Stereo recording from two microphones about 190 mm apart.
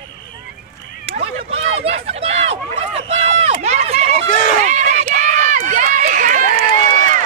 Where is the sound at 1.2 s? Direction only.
30° right (ahead or behind).